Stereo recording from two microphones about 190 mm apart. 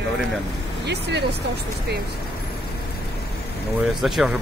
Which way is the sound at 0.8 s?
60° right (ahead or behind).